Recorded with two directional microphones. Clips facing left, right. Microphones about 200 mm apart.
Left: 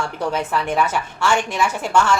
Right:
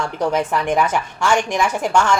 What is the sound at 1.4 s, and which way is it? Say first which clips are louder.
Speech: right 2 dB; 10° right (ahead or behind).